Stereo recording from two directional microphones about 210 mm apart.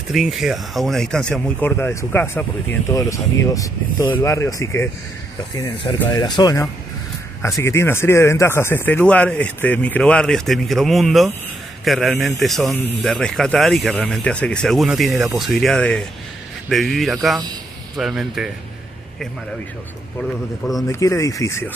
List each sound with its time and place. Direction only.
0.1 s speech: centre (ahead or behind)
20.8 s speech: 15° left (ahead or behind)